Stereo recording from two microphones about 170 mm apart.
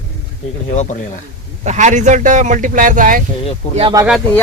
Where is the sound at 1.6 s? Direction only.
45° right (ahead or behind).